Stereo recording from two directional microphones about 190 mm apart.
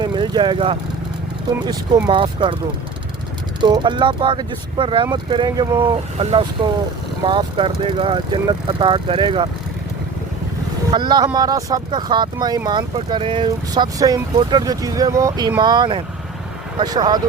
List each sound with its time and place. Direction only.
0.0 s vehicle: 25° right (ahead or behind)
2.0 s speech: 25° right (ahead or behind)
3.6 s speech: 25° right (ahead or behind)
10.9 s speech: 25° right (ahead or behind)